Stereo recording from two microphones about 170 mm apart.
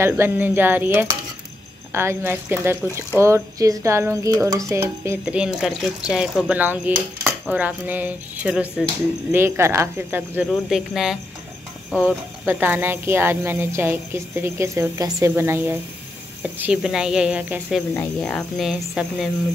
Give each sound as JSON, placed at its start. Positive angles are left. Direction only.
{"t": 0.0, "sound": "speech", "side_deg": -15}
{"t": 17.9, "sound": "speech", "side_deg": 5}